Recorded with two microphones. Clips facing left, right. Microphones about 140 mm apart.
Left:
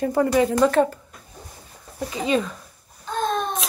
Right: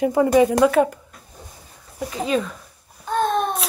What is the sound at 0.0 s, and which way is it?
Speech, 15° right (ahead or behind).